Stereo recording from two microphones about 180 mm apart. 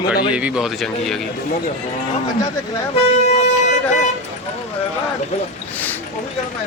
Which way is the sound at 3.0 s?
35° left (ahead or behind).